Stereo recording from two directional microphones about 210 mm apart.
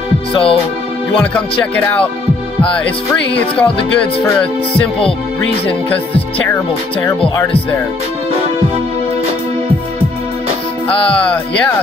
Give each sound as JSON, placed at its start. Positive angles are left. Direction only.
{"t": 0.3, "sound": "speech", "side_deg": 25}
{"t": 1.1, "sound": "speech", "side_deg": 5}
{"t": 2.7, "sound": "music", "side_deg": 5}
{"t": 10.9, "sound": "music", "side_deg": 25}